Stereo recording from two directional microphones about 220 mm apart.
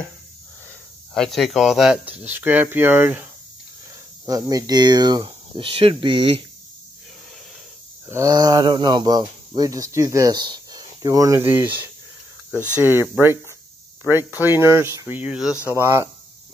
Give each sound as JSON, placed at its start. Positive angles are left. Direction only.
{"t": 1.1, "sound": "speech", "side_deg": 0}
{"t": 4.3, "sound": "speech", "side_deg": -15}
{"t": 8.1, "sound": "speech", "side_deg": -15}